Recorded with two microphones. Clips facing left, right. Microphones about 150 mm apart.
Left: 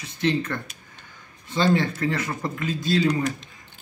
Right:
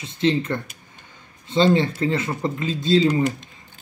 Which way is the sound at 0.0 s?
20° right (ahead or behind).